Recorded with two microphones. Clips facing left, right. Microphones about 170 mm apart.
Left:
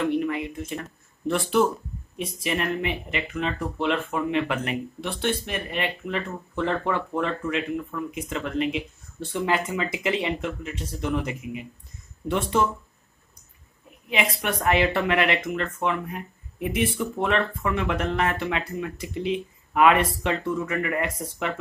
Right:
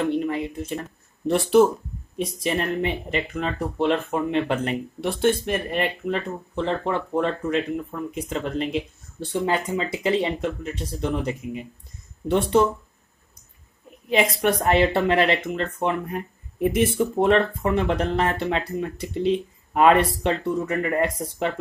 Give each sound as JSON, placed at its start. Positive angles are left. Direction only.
{"t": 0.0, "sound": "speech", "side_deg": -30}
{"t": 14.0, "sound": "speech", "side_deg": -35}